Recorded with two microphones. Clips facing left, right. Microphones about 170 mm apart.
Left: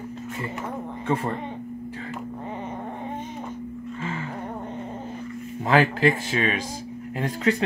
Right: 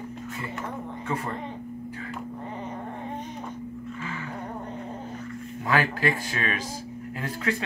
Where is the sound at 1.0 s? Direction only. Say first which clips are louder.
Left 6 dB; 30° left (ahead or behind).